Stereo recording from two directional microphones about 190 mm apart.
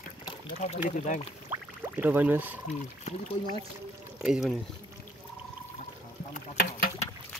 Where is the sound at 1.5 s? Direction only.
10° right (ahead or behind).